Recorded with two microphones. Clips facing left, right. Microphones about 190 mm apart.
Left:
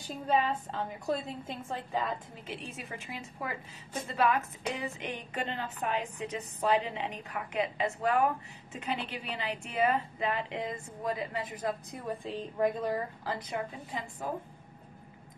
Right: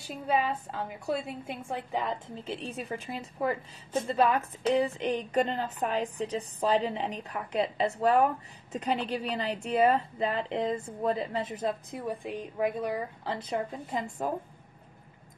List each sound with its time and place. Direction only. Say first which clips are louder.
0.3 s a woman's voice: right 1 dB; 5° right (ahead or behind)
13.2 s speech: right 3 dB; 25° right (ahead or behind)
13.9 s a woman's voice: right 6 dB; 50° right (ahead or behind)